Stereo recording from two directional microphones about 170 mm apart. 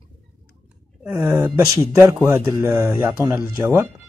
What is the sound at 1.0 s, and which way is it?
Speech, 10° right (ahead or behind).